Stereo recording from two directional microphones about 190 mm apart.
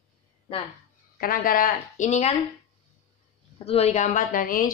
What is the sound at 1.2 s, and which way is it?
A woman's voice, 50° left (ahead or behind).